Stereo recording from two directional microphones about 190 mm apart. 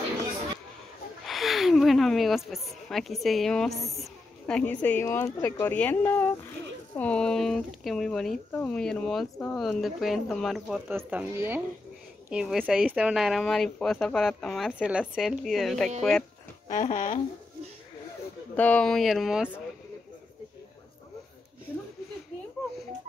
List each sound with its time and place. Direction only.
1.2 s speech: centre (ahead or behind)
16.6 s speech: 45° left (ahead or behind)
18.6 s speech: 5° left (ahead or behind)